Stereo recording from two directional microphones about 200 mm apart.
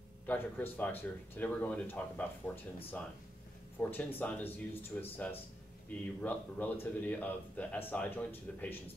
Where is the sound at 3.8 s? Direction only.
10° left (ahead or behind).